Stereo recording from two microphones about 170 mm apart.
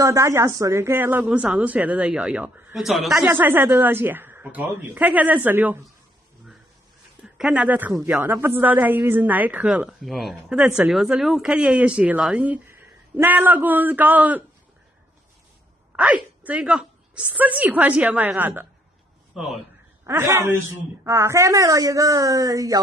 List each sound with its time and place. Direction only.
0.0 s speech: 20° right (ahead or behind); by 3.3 s centre (ahead or behind)
3.3 s speech: 10° right (ahead or behind)
7.3 s speech: 5° right (ahead or behind)
16.0 s speech: 10° right (ahead or behind)
20.1 s a woman's voice: 15° right (ahead or behind)